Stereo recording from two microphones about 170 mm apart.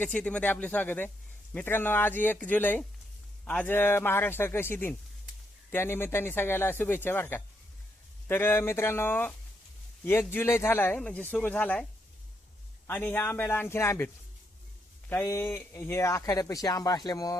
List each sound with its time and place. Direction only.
0.0 s speech: 5° left (ahead or behind)
12.9 s speech: 10° left (ahead or behind)
15.1 s speech: 15° left (ahead or behind)